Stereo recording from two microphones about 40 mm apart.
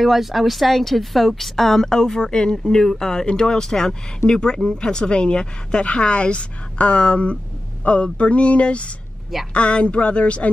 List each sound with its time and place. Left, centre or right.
0.0 s a woman's voice: centre
1.9 s a woman's voice: centre; by 10.5 s left